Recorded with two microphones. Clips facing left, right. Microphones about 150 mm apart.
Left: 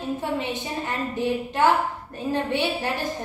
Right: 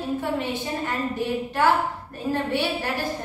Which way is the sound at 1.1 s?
20° left (ahead or behind).